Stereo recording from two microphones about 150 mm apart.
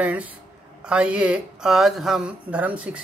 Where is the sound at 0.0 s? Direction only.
10° right (ahead or behind).